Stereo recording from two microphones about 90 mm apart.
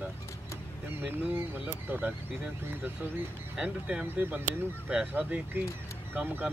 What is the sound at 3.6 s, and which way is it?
Speech, 15° right (ahead or behind).